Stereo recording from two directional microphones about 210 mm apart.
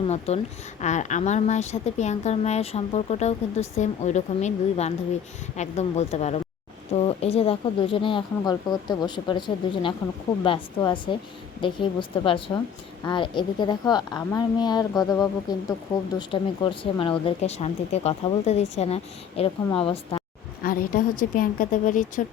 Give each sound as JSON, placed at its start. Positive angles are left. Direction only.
{"t": 0.8, "sound": "a woman's voice", "side_deg": 35}
{"t": 20.6, "sound": "a woman's voice", "side_deg": 40}